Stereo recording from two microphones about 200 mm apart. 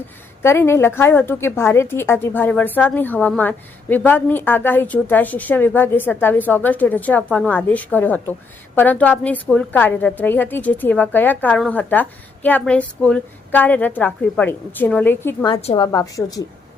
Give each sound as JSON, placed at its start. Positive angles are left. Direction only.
{"t": 0.4, "sound": "a woman's voice", "side_deg": 15}
{"t": 15.4, "sound": "a woman's voice", "side_deg": 25}